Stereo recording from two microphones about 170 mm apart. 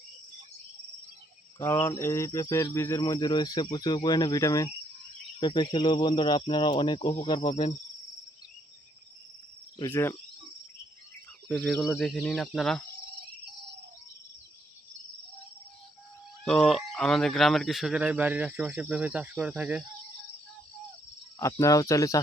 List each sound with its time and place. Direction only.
1.5 s speech: 15° left (ahead or behind); by 7.7 s 35° left (ahead or behind)
9.7 s speech: 20° left (ahead or behind)
11.4 s speech: 5° left (ahead or behind)
16.4 s speech: centre (ahead or behind)
21.6 s speech: 20° left (ahead or behind)